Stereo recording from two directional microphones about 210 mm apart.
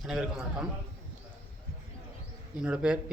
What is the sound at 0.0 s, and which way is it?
Speech, centre (ahead or behind).